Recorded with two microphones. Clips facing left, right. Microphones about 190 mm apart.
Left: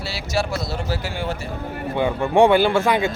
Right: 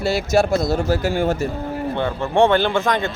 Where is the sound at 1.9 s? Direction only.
15° left (ahead or behind).